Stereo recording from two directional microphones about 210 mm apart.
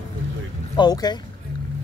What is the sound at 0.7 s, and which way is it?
Speech, 20° left (ahead or behind).